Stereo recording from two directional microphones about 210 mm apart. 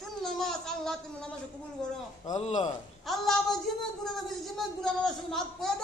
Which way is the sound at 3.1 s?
Centre (ahead or behind).